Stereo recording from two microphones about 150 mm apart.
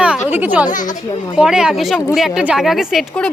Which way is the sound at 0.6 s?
60° left (ahead or behind).